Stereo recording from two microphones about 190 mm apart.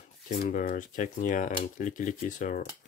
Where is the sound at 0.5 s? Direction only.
45° left (ahead or behind).